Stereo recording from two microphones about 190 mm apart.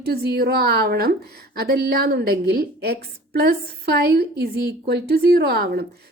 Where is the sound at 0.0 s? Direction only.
60° right (ahead or behind).